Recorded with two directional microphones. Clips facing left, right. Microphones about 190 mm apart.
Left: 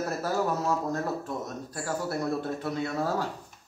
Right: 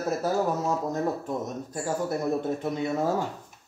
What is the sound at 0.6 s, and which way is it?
Speech, 15° right (ahead or behind).